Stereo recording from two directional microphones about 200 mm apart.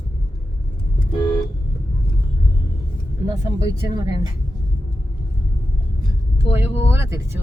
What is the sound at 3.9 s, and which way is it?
Speech, 40° left (ahead or behind).